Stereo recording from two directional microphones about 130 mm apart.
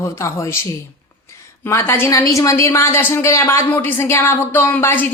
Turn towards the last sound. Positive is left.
turn(degrees=15)  # may be behind; listen again after turning